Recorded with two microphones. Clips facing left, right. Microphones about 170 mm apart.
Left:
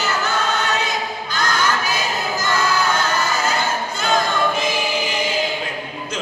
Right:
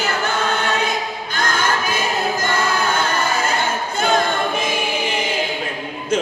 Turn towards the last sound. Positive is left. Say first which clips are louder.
# even
turn(degrees=-55)  # may be behind; listen again after turning